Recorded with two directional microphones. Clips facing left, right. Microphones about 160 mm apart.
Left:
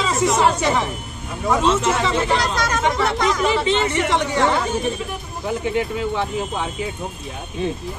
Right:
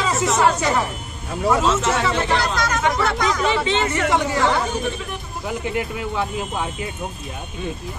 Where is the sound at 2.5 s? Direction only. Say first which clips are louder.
Even; 30° left (ahead or behind).